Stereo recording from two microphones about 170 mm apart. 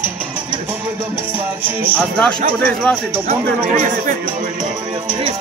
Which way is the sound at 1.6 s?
10° right (ahead or behind).